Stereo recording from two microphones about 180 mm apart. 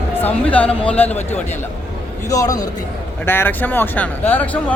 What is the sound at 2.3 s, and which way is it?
A man's voice, 20° left (ahead or behind).